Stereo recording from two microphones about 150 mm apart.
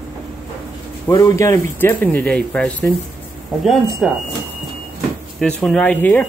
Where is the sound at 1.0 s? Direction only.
20° left (ahead or behind); by 2.7 s 5° left (ahead or behind).